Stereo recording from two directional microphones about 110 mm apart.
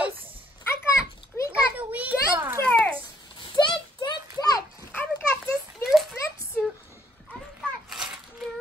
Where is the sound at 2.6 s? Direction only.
15° left (ahead or behind).